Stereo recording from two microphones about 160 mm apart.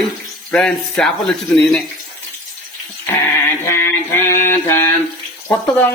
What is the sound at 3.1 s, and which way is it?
Mantra, 15° left (ahead or behind).